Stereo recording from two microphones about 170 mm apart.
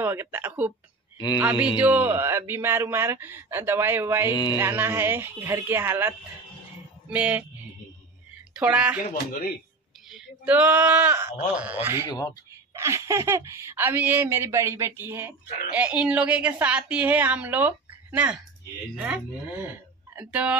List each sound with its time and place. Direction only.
0.0 s speech: 15° right (ahead or behind)
1.1 s speech: 25° left (ahead or behind)
1.4 s speech: 10° right (ahead or behind)
8.5 s speech: 10° right (ahead or behind)
9.2 s speech: 60° left (ahead or behind)
10.0 s speech: 5° right (ahead or behind)
12.1 s speech: 20° left (ahead or behind)
12.7 s speech: 15° right (ahead or behind)